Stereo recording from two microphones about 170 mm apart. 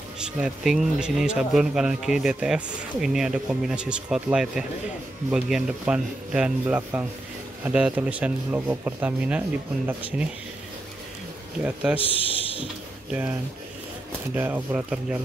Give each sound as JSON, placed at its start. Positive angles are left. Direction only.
{"t": 0.2, "sound": "a man's voice", "side_deg": -5}
{"t": 11.6, "sound": "a man's voice", "side_deg": -10}
{"t": 12.0, "sound": "a man's voice", "side_deg": 30}
{"t": 14.3, "sound": "a man's voice", "side_deg": -10}